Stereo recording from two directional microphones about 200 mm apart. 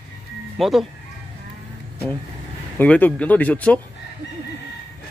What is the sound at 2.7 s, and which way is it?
Speech, 10° left (ahead or behind).